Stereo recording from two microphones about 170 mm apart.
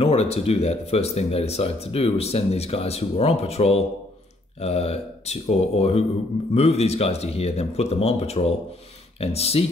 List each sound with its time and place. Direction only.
0.0 s speech: 35° left (ahead or behind)